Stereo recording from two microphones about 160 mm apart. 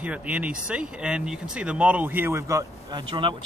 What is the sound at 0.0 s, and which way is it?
Speech, 10° right (ahead or behind).